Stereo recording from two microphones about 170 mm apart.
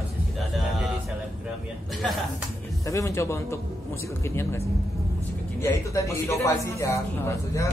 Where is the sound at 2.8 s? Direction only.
20° left (ahead or behind).